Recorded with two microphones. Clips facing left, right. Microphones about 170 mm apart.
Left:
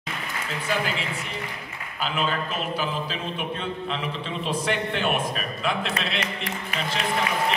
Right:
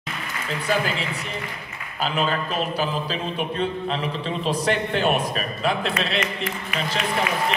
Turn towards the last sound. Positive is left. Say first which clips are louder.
# right 3 dB
turn(degrees=35)  # may be behind; listen again after turning